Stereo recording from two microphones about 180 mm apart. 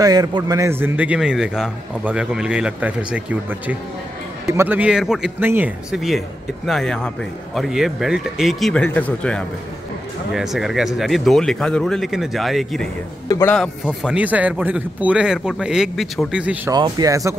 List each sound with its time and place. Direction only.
0.0 s a man's voice: 20° right (ahead or behind); by 12.8 s centre (ahead or behind)
13.3 s a man's voice: 15° left (ahead or behind)
13.6 s speech: 5° right (ahead or behind)
16.7 s speech: 20° right (ahead or behind)